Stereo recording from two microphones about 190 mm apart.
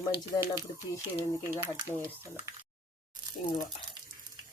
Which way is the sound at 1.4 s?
15° right (ahead or behind).